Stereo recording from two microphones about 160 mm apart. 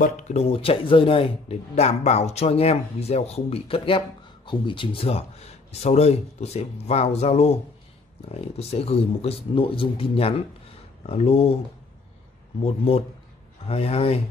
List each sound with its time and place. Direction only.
0.0 s speech: 45° left (ahead or behind)
12.6 s speech: 40° left (ahead or behind)